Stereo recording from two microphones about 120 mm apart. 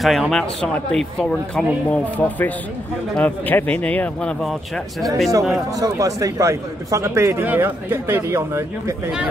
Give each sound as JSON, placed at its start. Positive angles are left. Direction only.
{"t": 0.0, "sound": "speech", "side_deg": 0}
{"t": 5.7, "sound": "speech", "side_deg": -30}